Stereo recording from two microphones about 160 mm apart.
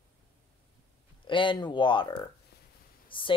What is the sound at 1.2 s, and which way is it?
Speech, 30° left (ahead or behind).